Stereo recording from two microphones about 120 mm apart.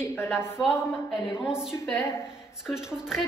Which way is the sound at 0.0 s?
20° left (ahead or behind).